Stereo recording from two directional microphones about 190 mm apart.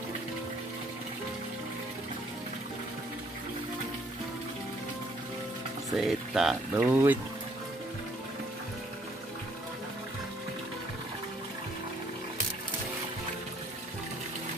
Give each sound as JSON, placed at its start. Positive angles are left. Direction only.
{"t": 5.9, "sound": "speech", "side_deg": 0}